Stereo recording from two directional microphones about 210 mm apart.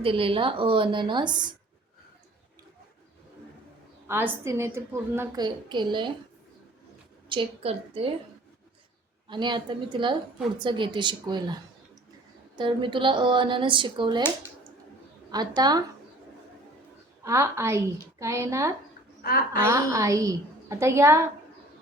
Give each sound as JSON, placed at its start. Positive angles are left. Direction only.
{"t": 0.0, "sound": "speech", "side_deg": -25}
{"t": 4.0, "sound": "a woman's voice", "side_deg": -10}
{"t": 7.3, "sound": "speech", "side_deg": -25}
{"t": 9.3, "sound": "speech", "side_deg": -20}
{"t": 12.5, "sound": "speech", "side_deg": -25}
{"t": 15.3, "sound": "speech", "side_deg": -20}
{"t": 17.2, "sound": "a woman's voice", "side_deg": -15}
{"t": 19.2, "sound": "a woman's voice", "side_deg": 45}
{"t": 19.6, "sound": "a woman's voice", "side_deg": -15}